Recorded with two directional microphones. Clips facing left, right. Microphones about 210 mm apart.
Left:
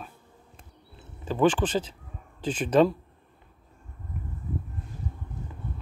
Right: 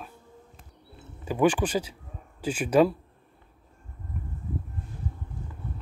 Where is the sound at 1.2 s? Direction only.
10° right (ahead or behind).